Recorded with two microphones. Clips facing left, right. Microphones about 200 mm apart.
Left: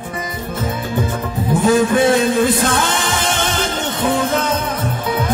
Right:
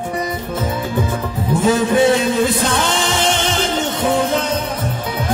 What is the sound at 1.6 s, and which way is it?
Music, 50° left (ahead or behind).